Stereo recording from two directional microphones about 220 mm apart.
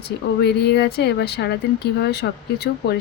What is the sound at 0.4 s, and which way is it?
Speech, 50° left (ahead or behind).